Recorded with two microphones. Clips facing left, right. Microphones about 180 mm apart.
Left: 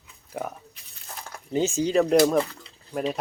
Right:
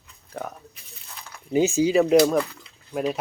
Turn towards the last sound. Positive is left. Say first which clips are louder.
# right 2 dB
turn(degrees=0)  # may be behind; listen again after turning